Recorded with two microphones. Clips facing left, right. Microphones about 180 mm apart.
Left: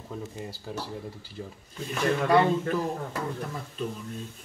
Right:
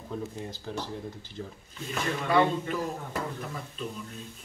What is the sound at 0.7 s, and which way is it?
Speech, 5° left (ahead or behind).